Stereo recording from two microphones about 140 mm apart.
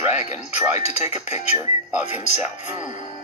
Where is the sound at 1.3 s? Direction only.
55° left (ahead or behind).